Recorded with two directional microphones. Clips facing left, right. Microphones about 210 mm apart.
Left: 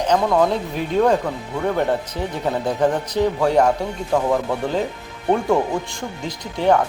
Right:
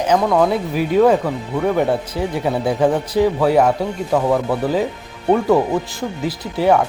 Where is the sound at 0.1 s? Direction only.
Centre (ahead or behind).